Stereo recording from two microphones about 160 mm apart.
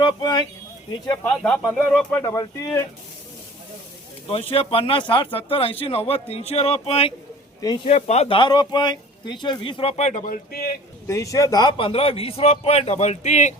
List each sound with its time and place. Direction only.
0.0 s speech: 30° left (ahead or behind)
1.4 s speech: 5° left (ahead or behind)
2.1 s speech: 20° left (ahead or behind)
4.3 s speech: 35° left (ahead or behind); by 10.8 s 75° left (ahead or behind)
11.1 s speech: 20° left (ahead or behind); by 13.5 s 45° left (ahead or behind)